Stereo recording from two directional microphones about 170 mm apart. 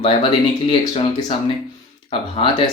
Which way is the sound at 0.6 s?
30° left (ahead or behind).